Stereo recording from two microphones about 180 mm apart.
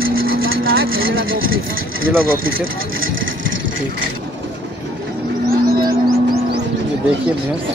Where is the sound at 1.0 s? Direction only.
90° right.